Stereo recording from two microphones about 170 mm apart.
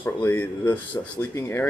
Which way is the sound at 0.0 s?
10° left (ahead or behind).